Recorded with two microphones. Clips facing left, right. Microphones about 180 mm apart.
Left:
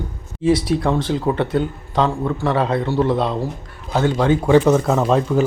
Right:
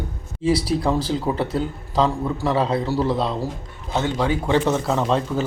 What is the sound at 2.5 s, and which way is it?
Speech, 30° right (ahead or behind).